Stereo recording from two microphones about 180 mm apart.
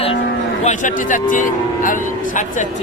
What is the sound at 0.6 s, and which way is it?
Speech, 45° left (ahead or behind).